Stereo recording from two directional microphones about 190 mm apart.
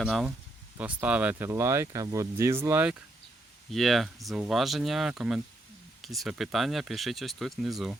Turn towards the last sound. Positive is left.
turn(degrees=0)  # may be behind; listen again after turning